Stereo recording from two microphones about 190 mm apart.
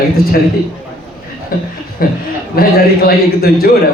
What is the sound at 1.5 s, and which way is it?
A man's voice, 50° left (ahead or behind).